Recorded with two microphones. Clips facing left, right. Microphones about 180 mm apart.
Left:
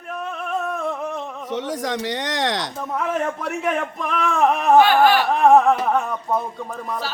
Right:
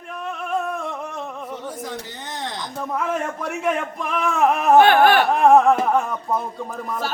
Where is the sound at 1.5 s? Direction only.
90° left.